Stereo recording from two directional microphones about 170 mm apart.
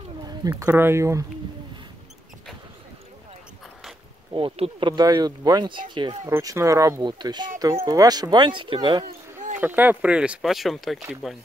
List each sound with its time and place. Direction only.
0.3 s speech: 25° right (ahead or behind)
4.3 s speech: 30° right (ahead or behind)
9.6 s speech: 10° right (ahead or behind)